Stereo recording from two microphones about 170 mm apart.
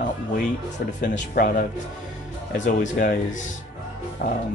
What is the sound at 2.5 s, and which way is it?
Speech, 45° left (ahead or behind).